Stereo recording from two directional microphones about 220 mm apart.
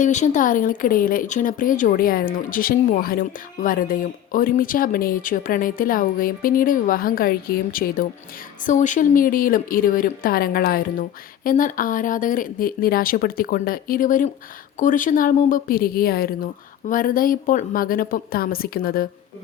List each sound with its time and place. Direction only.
0.0 s speech: 35° left (ahead or behind)